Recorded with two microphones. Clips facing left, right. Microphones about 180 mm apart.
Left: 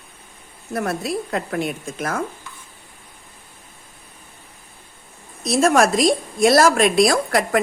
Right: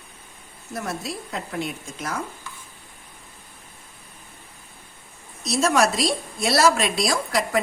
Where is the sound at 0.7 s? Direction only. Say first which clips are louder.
Left 7 dB; 60° left (ahead or behind).